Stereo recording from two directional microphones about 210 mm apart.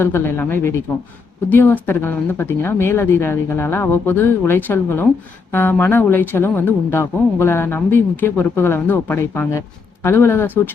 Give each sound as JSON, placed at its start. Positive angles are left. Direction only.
{"t": 0.0, "sound": "speech", "side_deg": 10}